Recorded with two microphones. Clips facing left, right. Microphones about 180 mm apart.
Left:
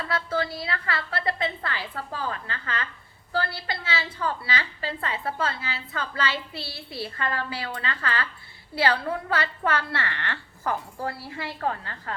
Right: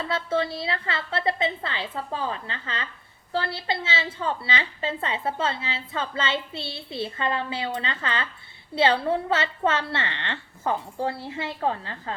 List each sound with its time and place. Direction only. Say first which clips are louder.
0.0 s a woman's voice: right 2 dB; 25° right (ahead or behind)